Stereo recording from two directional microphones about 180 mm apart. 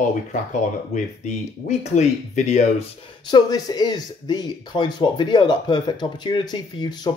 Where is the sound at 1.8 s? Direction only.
35° left (ahead or behind).